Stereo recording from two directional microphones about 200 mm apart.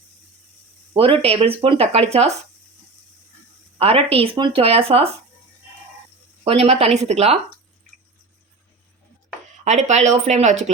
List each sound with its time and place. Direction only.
1.2 s speech: 30° right (ahead or behind)
3.8 s speech: 30° right (ahead or behind)
6.4 s speech: 30° right (ahead or behind)
9.6 s speech: 35° right (ahead or behind)